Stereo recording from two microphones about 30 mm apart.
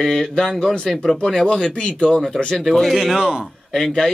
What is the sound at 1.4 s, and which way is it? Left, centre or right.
Speech, left.